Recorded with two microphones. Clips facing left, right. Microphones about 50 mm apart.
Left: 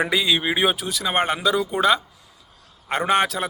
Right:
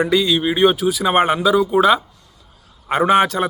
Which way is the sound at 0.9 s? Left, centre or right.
Centre.